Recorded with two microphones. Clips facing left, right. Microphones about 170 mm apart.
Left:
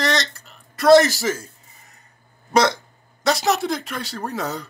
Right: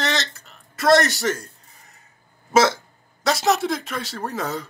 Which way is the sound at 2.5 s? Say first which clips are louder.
Right 1 dB; 5° right (ahead or behind).